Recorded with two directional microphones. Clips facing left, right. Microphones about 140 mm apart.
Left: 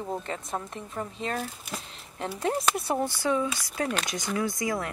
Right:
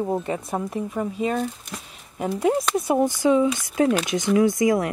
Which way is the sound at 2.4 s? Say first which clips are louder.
Right 6 dB; 10° right (ahead or behind).